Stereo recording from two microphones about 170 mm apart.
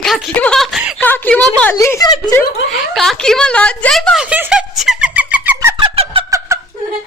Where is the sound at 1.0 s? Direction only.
10° left (ahead or behind).